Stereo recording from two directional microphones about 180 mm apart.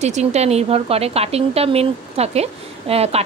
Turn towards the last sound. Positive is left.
turn(degrees=-35)  # may be behind; listen again after turning